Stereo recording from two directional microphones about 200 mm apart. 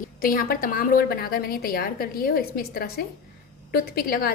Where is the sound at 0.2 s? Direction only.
45° left (ahead or behind).